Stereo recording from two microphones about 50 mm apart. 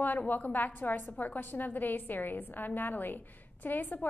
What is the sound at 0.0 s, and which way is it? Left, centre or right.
A woman's voice, left.